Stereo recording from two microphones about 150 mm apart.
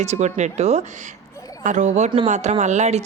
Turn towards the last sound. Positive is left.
turn(degrees=-50)  # may be behind; listen again after turning